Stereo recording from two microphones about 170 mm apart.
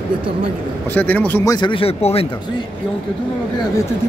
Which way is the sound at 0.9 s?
10° left (ahead or behind).